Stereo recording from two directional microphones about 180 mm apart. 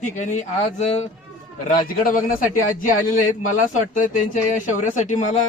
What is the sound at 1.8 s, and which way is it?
Speech, 50° left (ahead or behind).